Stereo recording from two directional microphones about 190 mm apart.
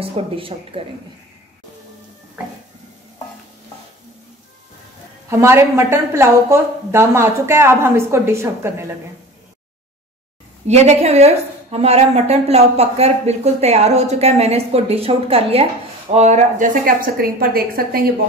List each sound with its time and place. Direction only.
0.0 s speech: 30° right (ahead or behind)
5.3 s a woman's voice: 15° right (ahead or behind)
10.7 s a woman's voice: 35° right (ahead or behind); by 18.0 s 55° right (ahead or behind)